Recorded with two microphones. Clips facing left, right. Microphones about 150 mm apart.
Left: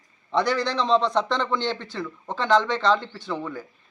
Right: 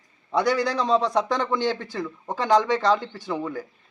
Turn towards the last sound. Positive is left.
turn(degrees=-15)  # may be behind; listen again after turning